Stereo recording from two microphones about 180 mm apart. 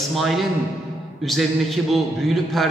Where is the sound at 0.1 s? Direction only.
Centre (ahead or behind).